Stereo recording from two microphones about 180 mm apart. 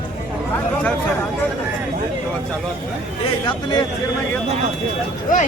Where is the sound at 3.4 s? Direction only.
25° left (ahead or behind).